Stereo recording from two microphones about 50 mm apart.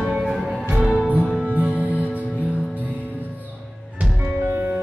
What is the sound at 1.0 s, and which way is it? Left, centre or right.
Music, right.